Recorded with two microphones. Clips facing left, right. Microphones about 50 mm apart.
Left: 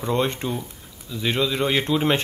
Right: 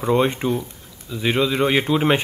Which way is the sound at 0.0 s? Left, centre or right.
Centre.